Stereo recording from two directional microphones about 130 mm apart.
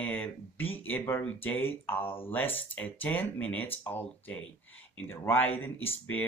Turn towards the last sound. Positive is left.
turn(degrees=15)  # may be behind; listen again after turning